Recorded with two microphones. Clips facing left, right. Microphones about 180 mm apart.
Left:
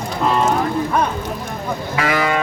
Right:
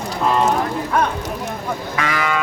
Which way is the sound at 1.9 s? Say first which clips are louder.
Left 4 dB; 30° left (ahead or behind).